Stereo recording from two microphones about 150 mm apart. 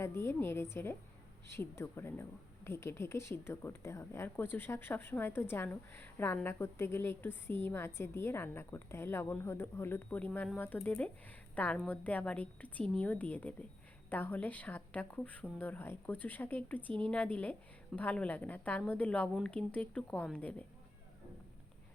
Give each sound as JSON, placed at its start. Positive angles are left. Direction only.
{"t": 0.0, "sound": "a woman's voice", "side_deg": 15}